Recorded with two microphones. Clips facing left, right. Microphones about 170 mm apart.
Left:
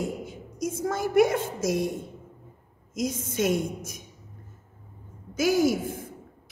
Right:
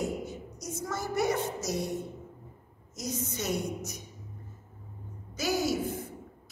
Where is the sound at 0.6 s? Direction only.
90° left.